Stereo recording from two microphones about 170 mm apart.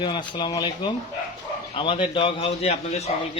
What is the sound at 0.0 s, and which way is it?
A man's voice, 25° left (ahead or behind).